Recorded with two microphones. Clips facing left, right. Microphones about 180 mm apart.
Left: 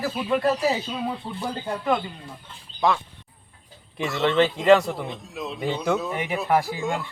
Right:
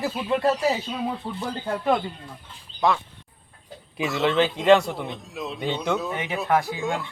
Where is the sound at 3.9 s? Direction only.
Centre (ahead or behind).